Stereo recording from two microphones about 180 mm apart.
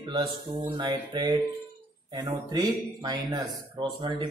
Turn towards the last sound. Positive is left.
turn(degrees=-20)  # may be behind; listen again after turning